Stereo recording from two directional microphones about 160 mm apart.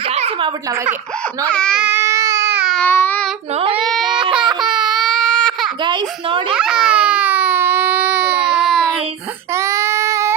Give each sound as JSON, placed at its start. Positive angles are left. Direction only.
{"t": 0.1, "sound": "a sound", "side_deg": -35}
{"t": 1.5, "sound": "speech", "side_deg": 5}
{"t": 1.8, "sound": "baby cry", "side_deg": -15}
{"t": 2.6, "sound": "baby cry", "side_deg": 0}
{"t": 2.8, "sound": "child singing", "side_deg": 10}
{"t": 3.5, "sound": "speech", "side_deg": -35}
{"t": 4.0, "sound": "baby cry", "side_deg": -30}
{"t": 4.6, "sound": "baby cry", "side_deg": -5}
{"t": 5.8, "sound": "a child's voice", "side_deg": -30}
{"t": 6.5, "sound": "baby cry", "side_deg": -5}
{"t": 9.6, "sound": "child singing", "side_deg": -15}